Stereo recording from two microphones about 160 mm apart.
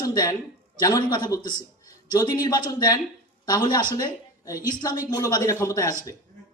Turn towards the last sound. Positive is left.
turn(degrees=20)  # may be behind; listen again after turning